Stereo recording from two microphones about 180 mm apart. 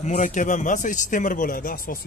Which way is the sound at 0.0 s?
40° left (ahead or behind).